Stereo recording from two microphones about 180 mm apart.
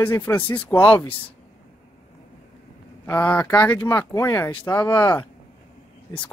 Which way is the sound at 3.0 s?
10° left (ahead or behind).